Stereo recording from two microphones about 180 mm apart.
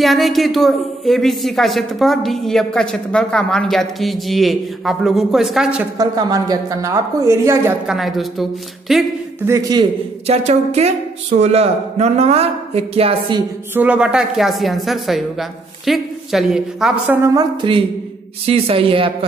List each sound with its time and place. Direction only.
0.0 s speech: centre (ahead or behind)
5.9 s a woman's voice: 20° right (ahead or behind)
7.8 s speech: centre (ahead or behind)
9.5 s a woman's voice: 20° right (ahead or behind)
10.2 s speech: 35° right (ahead or behind)
13.7 s speech: 5° right (ahead or behind)
17.3 s a woman's voice: 25° right (ahead or behind)